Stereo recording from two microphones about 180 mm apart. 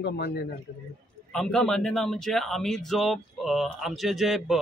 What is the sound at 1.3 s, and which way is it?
A man's voice, 5° left (ahead or behind).